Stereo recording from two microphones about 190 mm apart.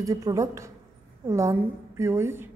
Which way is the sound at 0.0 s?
15° right (ahead or behind).